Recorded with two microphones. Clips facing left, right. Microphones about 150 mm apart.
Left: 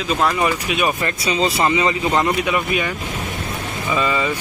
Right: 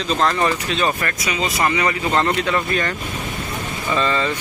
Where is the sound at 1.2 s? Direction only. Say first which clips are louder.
Left 3 dB; 30° left (ahead or behind).